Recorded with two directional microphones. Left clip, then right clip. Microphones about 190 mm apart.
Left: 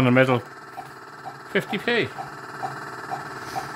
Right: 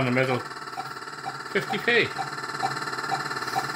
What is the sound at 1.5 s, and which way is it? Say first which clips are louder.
Speech: even; 40° left (ahead or behind).